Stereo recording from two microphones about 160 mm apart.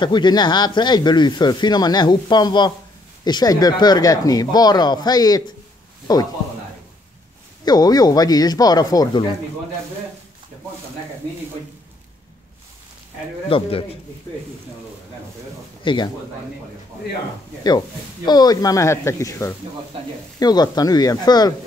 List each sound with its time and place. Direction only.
0.0 s speech: 30° left (ahead or behind)
7.6 s speech: 25° left (ahead or behind)
13.5 s a man's voice: 35° left (ahead or behind)
15.8 s speech: 30° left (ahead or behind)
17.6 s speech: 25° left (ahead or behind)